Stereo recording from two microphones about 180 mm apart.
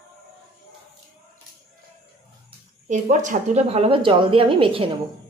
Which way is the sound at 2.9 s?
40° right (ahead or behind).